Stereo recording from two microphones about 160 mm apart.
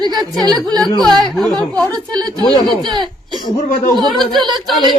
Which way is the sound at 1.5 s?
5° left (ahead or behind).